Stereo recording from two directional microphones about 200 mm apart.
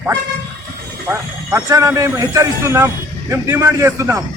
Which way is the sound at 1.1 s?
15° right (ahead or behind).